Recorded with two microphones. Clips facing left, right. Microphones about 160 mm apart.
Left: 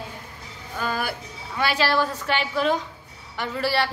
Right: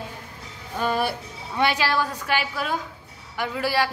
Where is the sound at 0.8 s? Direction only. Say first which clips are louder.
Right 3 dB; 25° right (ahead or behind).